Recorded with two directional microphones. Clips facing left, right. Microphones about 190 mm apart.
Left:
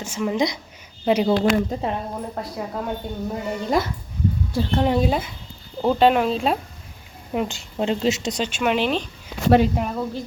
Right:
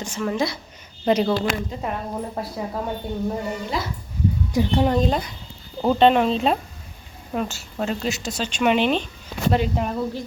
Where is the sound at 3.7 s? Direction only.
50° left (ahead or behind).